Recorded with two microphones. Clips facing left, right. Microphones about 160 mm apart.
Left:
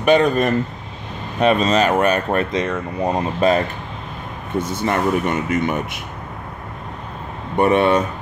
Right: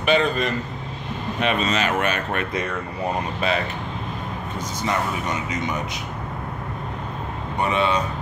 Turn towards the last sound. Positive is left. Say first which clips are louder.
# left 7 dB
turn(degrees=55)  # may be behind; listen again after turning